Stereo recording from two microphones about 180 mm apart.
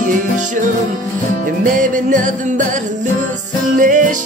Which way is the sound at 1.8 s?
45° right (ahead or behind).